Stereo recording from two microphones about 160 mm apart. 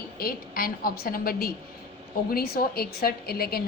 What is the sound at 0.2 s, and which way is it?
A woman's voice, 65° left (ahead or behind).